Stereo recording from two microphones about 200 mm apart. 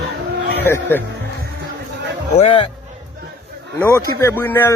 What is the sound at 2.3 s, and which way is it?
Speech, 30° left (ahead or behind).